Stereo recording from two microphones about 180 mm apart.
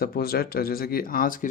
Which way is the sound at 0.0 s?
55° left (ahead or behind).